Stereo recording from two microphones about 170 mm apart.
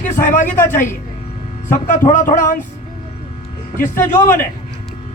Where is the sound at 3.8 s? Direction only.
15° left (ahead or behind).